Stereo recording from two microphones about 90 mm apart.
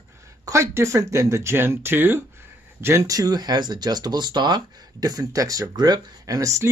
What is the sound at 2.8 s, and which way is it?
Speech, 35° right (ahead or behind).